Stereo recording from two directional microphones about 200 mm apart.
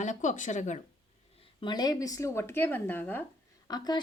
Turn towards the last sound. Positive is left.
turn(degrees=20)  # may be behind; listen again after turning